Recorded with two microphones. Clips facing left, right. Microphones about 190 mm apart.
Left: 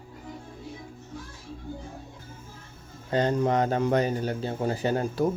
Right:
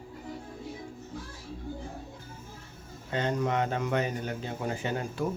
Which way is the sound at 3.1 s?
35° left (ahead or behind).